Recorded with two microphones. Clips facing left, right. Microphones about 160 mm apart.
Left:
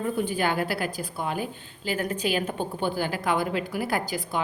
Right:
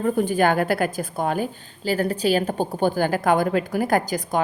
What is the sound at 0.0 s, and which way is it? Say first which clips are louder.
A woman's voice: right 6 dB; 45° right (ahead or behind).